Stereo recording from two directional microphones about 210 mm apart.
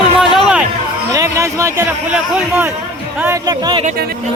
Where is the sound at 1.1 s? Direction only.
15° right (ahead or behind).